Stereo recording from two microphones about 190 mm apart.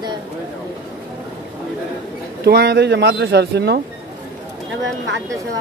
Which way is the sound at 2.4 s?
55° right (ahead or behind).